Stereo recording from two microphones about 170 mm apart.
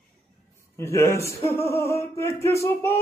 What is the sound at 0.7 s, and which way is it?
Mantra, 15° left (ahead or behind).